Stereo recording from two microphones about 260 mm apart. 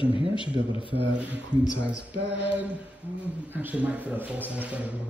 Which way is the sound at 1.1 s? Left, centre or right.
Centre.